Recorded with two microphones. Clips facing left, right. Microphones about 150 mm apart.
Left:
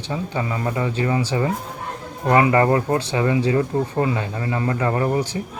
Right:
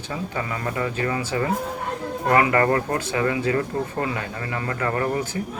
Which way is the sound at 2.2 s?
20° left (ahead or behind).